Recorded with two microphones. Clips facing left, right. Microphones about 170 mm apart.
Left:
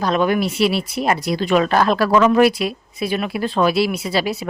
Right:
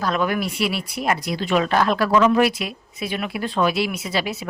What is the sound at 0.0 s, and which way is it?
Speech, 25° left (ahead or behind).